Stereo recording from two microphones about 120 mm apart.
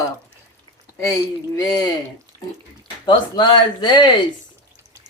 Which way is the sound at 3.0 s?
40° left (ahead or behind).